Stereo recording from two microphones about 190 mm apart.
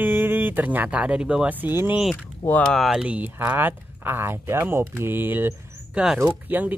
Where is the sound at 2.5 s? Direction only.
Centre (ahead or behind).